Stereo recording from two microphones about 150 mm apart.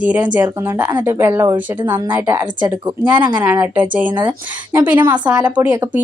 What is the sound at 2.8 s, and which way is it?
Speech, 30° right (ahead or behind).